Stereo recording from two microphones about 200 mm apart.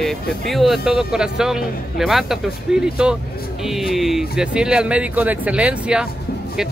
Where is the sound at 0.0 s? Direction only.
Centre (ahead or behind).